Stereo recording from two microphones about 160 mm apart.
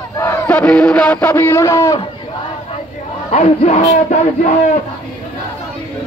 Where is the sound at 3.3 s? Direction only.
40° left (ahead or behind).